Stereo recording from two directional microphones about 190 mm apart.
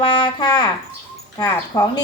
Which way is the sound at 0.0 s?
25° left (ahead or behind).